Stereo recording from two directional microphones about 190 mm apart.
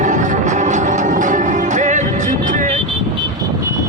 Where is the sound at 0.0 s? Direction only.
40° right (ahead or behind).